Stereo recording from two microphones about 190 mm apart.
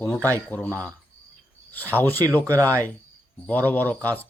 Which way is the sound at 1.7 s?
10° left (ahead or behind).